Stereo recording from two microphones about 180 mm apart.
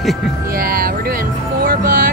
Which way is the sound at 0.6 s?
50° right (ahead or behind).